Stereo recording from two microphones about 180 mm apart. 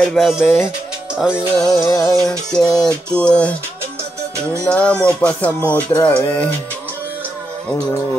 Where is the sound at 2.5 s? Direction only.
5° left (ahead or behind).